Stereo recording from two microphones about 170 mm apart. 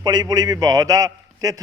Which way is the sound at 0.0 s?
25° right (ahead or behind).